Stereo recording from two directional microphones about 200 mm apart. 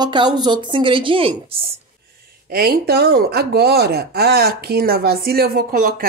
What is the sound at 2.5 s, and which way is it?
Speech, 50° right (ahead or behind).